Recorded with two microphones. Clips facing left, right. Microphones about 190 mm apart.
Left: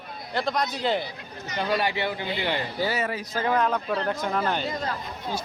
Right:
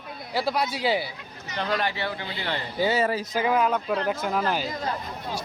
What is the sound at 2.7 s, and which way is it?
Speech, 20° right (ahead or behind).